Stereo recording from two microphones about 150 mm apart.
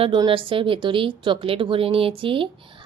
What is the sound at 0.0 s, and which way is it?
A woman's voice, 35° right (ahead or behind).